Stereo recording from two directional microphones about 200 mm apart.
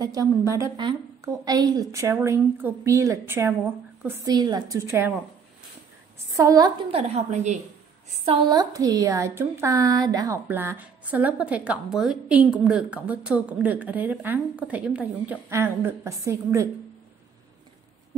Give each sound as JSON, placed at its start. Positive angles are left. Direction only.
{"t": 0.0, "sound": "a woman's voice", "side_deg": -15}
{"t": 6.3, "sound": "a woman's voice", "side_deg": -15}
{"t": 8.3, "sound": "a woman's voice", "side_deg": -20}